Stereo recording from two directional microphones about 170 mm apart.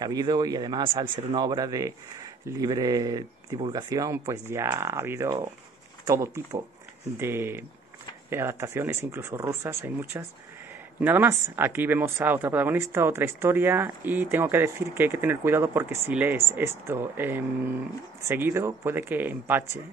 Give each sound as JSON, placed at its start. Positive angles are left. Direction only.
{"t": 0.0, "sound": "speech", "side_deg": -25}